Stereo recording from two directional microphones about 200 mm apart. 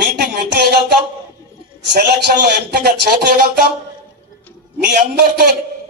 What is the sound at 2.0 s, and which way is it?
Speech, 55° right (ahead or behind).